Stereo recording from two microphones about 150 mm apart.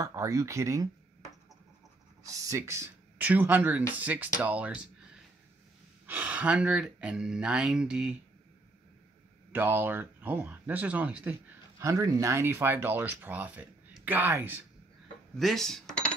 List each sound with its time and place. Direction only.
0.0 s speech: 20° right (ahead or behind)
2.2 s speech: 20° right (ahead or behind)
6.0 s speech: 10° right (ahead or behind)
9.5 s speech: 10° right (ahead or behind)
15.3 s speech: centre (ahead or behind)